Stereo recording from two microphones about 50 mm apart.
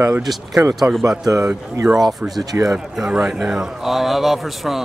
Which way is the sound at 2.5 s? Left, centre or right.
Right.